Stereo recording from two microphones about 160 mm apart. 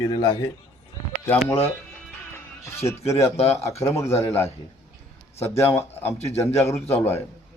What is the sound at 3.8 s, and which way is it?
Speech, 20° left (ahead or behind).